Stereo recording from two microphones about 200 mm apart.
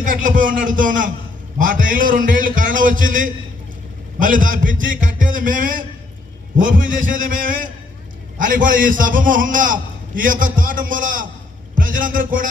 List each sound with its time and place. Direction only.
0.0 s a man's voice: 40° right (ahead or behind)